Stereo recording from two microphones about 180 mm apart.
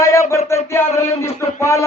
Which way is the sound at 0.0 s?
15° left (ahead or behind).